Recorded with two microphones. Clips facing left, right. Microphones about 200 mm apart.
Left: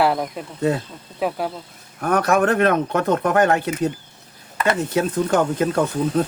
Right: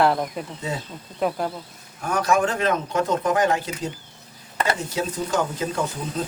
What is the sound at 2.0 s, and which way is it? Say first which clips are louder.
Speech: left 3 dB; 60° left (ahead or behind).